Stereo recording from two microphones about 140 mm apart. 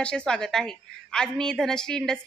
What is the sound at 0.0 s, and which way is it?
A woman's voice, 5° left (ahead or behind).